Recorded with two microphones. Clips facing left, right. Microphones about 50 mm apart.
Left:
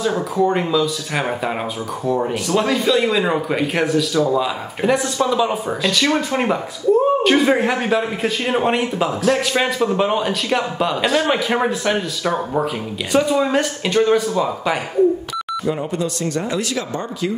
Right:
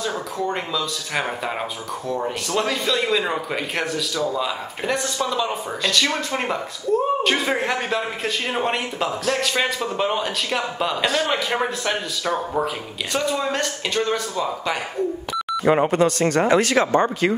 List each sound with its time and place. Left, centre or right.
0.0 s speech: centre
15.6 s speech: right